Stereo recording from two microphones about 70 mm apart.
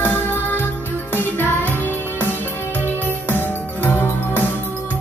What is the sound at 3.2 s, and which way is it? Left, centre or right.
Music, left.